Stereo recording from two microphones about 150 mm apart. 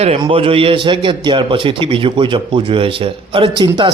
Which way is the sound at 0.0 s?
40° right (ahead or behind).